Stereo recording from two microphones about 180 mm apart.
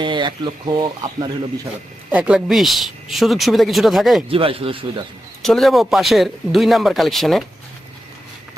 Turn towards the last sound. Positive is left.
turn(degrees=0)  # may be behind; listen again after turning